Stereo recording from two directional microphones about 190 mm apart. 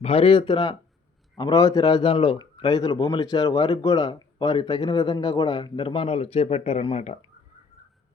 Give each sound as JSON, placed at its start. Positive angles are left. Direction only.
{"t": 0.0, "sound": "a man's voice", "side_deg": 30}